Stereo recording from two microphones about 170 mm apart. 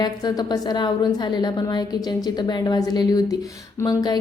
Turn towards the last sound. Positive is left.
turn(degrees=20)  # may be behind; listen again after turning